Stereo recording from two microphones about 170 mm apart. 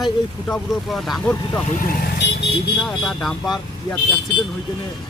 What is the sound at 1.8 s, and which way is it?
Speech, 70° left (ahead or behind).